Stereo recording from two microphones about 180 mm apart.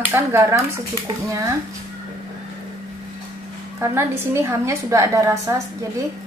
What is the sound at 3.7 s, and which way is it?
A woman's voice, 15° right (ahead or behind).